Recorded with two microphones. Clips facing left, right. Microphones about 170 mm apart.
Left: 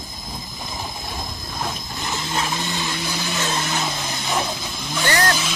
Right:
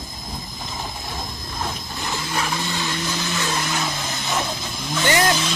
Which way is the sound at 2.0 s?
20° left (ahead or behind).